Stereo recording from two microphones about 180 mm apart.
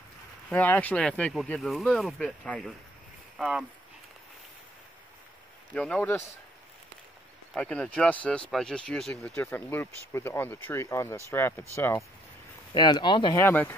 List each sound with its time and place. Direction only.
0.5 s speech: 10° left (ahead or behind)
5.8 s speech: 10° left (ahead or behind)
7.5 s speech: 5° left (ahead or behind)
12.7 s speech: 25° left (ahead or behind)